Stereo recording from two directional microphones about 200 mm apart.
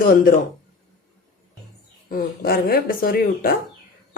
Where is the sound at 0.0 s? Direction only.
45° left (ahead or behind).